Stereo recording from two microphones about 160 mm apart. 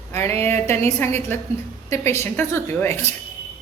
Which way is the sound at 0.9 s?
15° left (ahead or behind).